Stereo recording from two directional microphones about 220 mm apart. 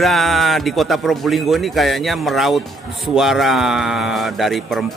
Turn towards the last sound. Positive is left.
turn(degrees=0)  # may be behind; listen again after turning